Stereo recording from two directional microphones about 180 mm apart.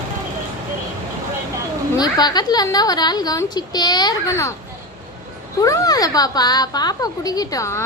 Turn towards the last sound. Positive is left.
turn(degrees=15)  # may be behind; listen again after turning